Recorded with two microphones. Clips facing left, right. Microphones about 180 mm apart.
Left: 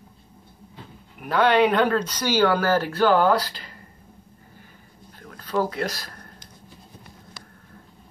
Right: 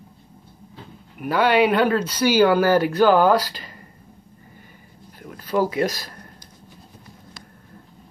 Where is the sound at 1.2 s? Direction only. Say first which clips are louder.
Right 1 dB; 10° right (ahead or behind).